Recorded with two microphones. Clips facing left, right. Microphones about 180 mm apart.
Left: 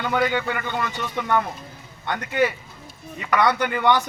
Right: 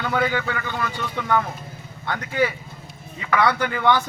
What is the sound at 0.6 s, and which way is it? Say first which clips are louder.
Speech: even; 20° left (ahead or behind).